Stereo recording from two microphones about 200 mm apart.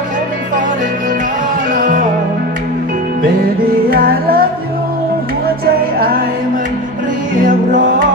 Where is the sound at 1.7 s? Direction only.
45° right (ahead or behind).